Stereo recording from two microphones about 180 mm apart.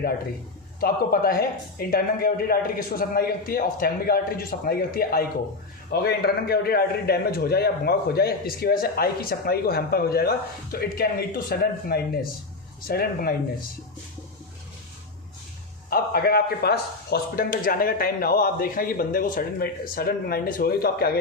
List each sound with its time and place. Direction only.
0.8 s a man's voice: 55° left (ahead or behind)
15.9 s a man's voice: 55° left (ahead or behind)